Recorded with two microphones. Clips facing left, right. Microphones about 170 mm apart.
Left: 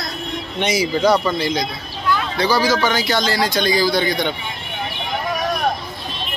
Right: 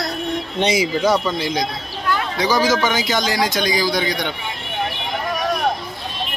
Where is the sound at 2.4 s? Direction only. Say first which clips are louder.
Even; 20° right (ahead or behind).